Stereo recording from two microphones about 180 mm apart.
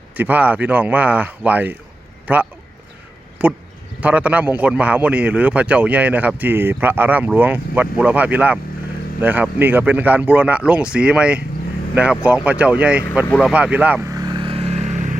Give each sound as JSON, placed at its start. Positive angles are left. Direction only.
{"t": 0.2, "sound": "a man's voice", "side_deg": -10}
{"t": 13.4, "sound": "vehicle", "side_deg": -5}